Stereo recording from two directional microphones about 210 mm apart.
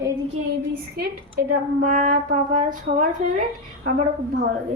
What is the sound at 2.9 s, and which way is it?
Speech, 50° right (ahead or behind).